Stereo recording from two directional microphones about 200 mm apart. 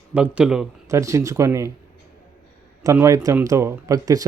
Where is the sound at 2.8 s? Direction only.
15° right (ahead or behind).